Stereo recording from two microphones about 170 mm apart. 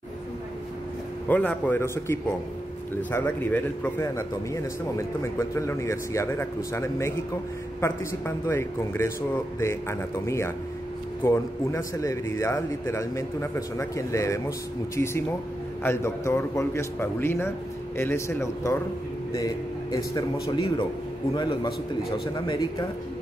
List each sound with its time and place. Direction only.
1.3 s a man's voice: 10° left (ahead or behind)
15.8 s a man's voice: 15° left (ahead or behind)
20.5 s a man's voice: 30° left (ahead or behind)